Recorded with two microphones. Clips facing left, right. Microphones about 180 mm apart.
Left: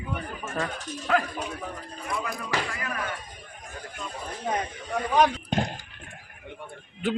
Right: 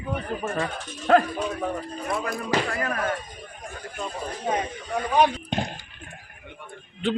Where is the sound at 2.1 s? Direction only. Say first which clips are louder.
Right 4 dB; 50° right (ahead or behind).